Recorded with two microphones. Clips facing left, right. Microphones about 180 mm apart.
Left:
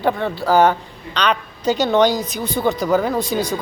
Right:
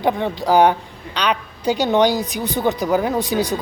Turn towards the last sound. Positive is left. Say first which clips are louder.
# right 1 dB
turn(degrees=-15)  # may be behind; listen again after turning